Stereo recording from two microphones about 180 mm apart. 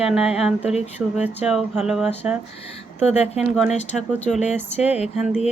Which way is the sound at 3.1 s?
35° left (ahead or behind).